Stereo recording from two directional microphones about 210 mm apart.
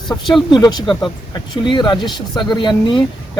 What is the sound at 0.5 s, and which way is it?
Speech, 20° left (ahead or behind).